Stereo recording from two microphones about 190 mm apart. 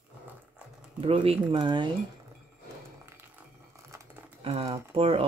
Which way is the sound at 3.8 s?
15° right (ahead or behind).